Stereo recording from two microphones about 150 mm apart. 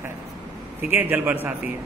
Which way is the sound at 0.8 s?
10° right (ahead or behind).